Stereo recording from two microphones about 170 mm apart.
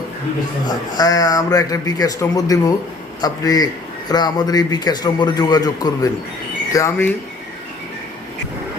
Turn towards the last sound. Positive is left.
turn(degrees=15)  # may be behind; listen again after turning